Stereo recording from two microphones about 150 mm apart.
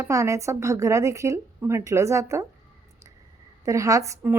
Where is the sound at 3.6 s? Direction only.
20° right (ahead or behind).